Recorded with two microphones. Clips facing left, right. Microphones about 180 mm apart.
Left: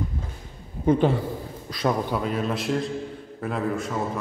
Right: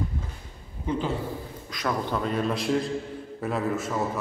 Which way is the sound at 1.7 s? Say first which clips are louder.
Left 5 dB; 30° left (ahead or behind).